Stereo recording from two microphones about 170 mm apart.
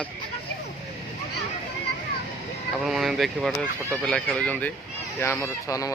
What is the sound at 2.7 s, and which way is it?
Speech, centre (ahead or behind).